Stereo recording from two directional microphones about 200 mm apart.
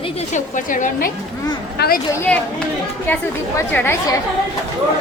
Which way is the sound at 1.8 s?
55° left (ahead or behind).